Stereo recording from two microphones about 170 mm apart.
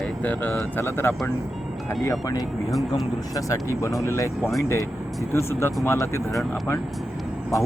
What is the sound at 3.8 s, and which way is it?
Speech, 20° left (ahead or behind).